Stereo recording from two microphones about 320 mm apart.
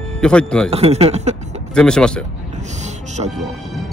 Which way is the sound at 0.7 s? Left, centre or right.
Centre.